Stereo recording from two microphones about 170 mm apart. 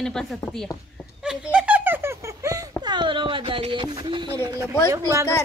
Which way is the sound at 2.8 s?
25° right (ahead or behind).